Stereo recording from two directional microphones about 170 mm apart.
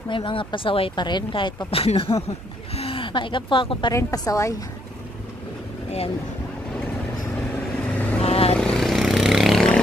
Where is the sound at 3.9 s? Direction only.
20° left (ahead or behind).